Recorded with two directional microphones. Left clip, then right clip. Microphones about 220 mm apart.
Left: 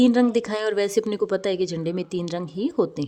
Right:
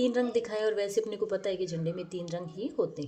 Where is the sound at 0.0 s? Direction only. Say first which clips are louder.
Left 8 dB; 45° left (ahead or behind).